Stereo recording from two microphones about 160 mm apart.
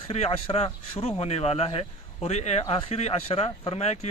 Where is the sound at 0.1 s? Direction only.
40° left (ahead or behind).